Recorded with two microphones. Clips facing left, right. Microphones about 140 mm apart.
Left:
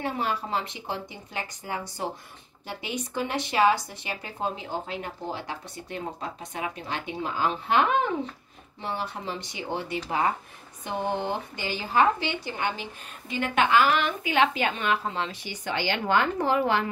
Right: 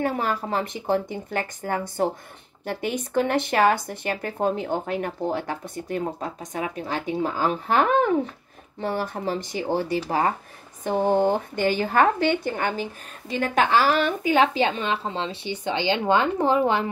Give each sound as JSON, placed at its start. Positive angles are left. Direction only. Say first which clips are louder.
{"t": 0.0, "sound": "a woman's voice", "louder": "right 4 dB", "side_deg": -45}